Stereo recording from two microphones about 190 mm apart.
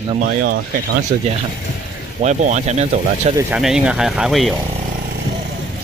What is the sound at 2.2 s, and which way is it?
Speech, 40° right (ahead or behind).